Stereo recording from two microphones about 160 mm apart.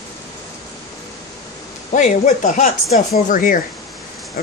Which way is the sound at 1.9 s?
55° left (ahead or behind).